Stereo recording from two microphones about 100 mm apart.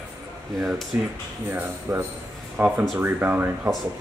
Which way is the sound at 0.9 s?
15° right (ahead or behind).